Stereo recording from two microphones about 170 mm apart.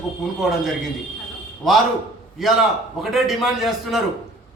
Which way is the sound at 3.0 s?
Centre (ahead or behind).